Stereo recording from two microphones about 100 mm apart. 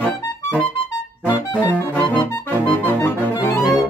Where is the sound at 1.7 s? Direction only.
20° left (ahead or behind).